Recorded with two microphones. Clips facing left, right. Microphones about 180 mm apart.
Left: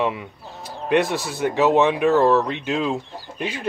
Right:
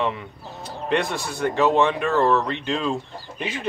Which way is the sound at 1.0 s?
15° right (ahead or behind).